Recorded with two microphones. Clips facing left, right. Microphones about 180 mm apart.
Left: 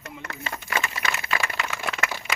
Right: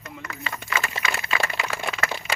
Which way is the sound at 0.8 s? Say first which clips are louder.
Right 1 dB; 30° right (ahead or behind).